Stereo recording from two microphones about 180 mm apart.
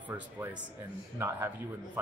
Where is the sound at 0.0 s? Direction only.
10° right (ahead or behind).